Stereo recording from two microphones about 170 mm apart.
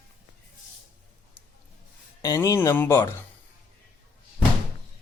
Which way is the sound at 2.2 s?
15° left (ahead or behind).